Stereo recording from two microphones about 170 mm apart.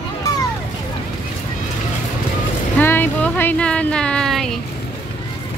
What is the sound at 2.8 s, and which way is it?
Speech, 10° left (ahead or behind).